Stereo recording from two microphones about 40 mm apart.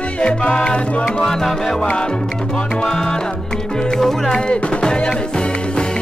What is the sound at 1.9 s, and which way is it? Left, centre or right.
Music, left.